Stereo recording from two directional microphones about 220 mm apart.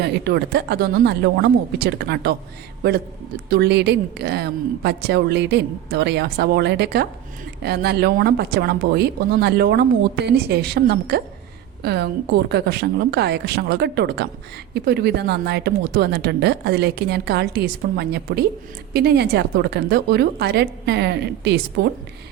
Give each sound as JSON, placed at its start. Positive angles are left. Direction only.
{"t": 0.0, "sound": "speech", "side_deg": -50}
{"t": 3.5, "sound": "speech", "side_deg": -50}